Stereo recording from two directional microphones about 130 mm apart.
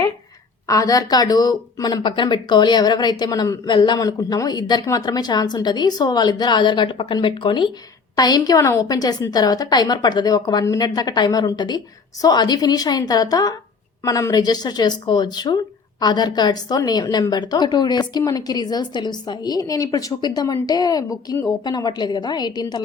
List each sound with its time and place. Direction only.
0.7 s a woman's voice: 25° left (ahead or behind)